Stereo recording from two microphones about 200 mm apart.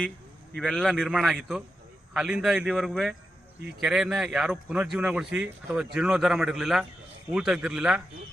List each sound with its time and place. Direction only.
0.5 s a man's voice: centre (ahead or behind)